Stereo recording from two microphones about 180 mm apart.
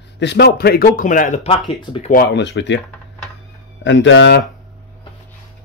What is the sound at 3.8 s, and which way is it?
Speech, 90° left.